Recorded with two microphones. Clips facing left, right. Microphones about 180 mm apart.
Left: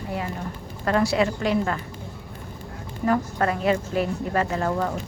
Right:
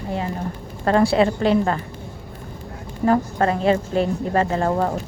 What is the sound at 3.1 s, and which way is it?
A woman's voice, 30° right (ahead or behind).